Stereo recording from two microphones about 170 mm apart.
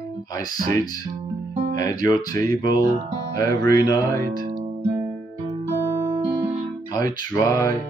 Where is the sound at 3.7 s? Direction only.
25° left (ahead or behind).